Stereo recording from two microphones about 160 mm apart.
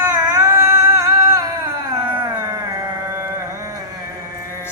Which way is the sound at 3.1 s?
20° right (ahead or behind).